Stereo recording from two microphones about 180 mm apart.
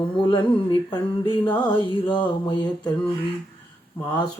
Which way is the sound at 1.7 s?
25° left (ahead or behind).